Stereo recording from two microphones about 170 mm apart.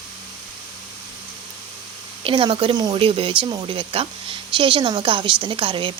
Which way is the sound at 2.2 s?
30° right (ahead or behind).